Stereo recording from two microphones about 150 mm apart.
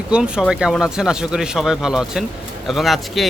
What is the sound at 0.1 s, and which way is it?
Speech, 5° right (ahead or behind).